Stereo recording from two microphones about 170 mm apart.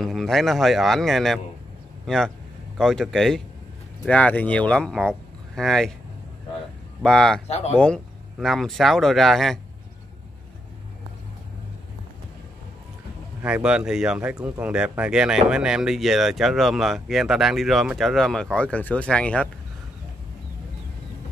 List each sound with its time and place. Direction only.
0.0 s a man's voice: centre (ahead or behind)
7.0 s speech: 5° left (ahead or behind)
7.4 s speech: 40° left (ahead or behind)
7.7 s speech: 5° left (ahead or behind)
13.4 s speech: 5° right (ahead or behind)